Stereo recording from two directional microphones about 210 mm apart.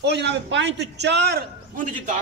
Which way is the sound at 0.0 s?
55° right (ahead or behind).